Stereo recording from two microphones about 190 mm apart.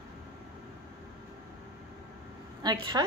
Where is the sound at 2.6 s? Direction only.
20° right (ahead or behind).